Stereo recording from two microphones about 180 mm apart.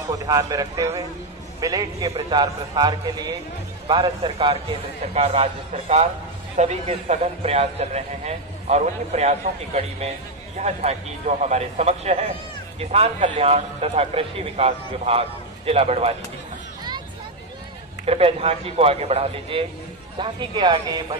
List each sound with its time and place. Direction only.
0.1 s a man's voice: 20° right (ahead or behind); by 16.2 s 35° right (ahead or behind)
18.0 s a man's voice: 35° right (ahead or behind)
20.2 s a man's voice: 25° right (ahead or behind)